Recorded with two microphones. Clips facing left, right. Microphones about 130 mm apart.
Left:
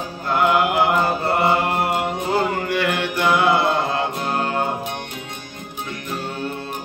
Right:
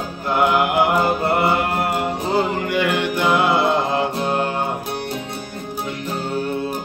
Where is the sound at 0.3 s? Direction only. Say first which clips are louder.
Even; 20° right (ahead or behind).